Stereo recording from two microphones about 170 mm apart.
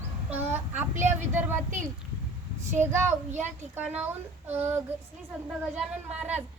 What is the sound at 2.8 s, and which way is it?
Speech, 15° right (ahead or behind).